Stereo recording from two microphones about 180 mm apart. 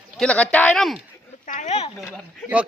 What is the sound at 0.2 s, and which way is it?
Speech, 5° left (ahead or behind).